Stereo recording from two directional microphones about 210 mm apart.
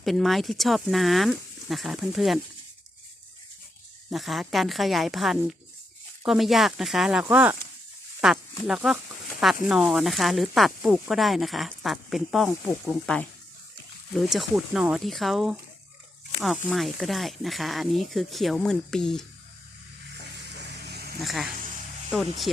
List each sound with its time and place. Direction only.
0.0 s speech: centre (ahead or behind)
4.1 s speech: centre (ahead or behind)
20.8 s a sound: 50° right (ahead or behind)
21.2 s speech: centre (ahead or behind)